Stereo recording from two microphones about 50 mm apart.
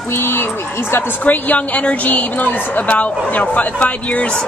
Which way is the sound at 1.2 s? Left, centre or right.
Left.